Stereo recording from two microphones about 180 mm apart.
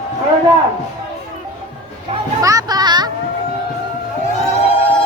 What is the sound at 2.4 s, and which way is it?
Music, 20° right (ahead or behind).